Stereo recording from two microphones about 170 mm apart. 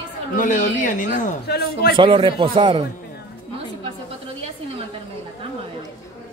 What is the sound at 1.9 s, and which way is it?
Speech, 30° right (ahead or behind).